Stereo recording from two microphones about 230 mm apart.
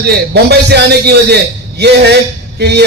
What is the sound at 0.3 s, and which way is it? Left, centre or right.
A man's voice, right.